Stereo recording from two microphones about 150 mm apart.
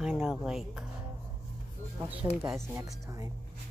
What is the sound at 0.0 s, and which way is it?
Speech, centre (ahead or behind).